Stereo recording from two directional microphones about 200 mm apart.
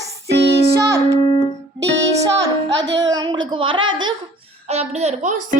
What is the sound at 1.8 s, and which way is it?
Music, 60° right (ahead or behind).